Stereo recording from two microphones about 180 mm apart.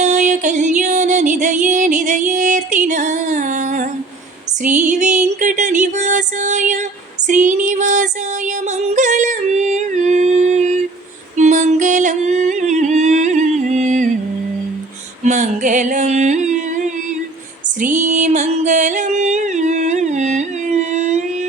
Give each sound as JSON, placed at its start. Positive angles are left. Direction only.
{"t": 0.0, "sound": "music", "side_deg": -45}
{"t": 7.3, "sound": "female singing", "side_deg": -45}
{"t": 9.0, "sound": "yodeling", "side_deg": -45}
{"t": 11.3, "sound": "music", "side_deg": -40}
{"t": 15.2, "sound": "music", "side_deg": -40}